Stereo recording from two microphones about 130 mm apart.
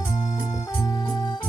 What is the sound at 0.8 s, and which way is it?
Organ, 25° left (ahead or behind).